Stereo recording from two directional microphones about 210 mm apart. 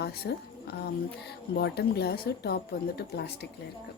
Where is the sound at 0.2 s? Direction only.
50° left (ahead or behind).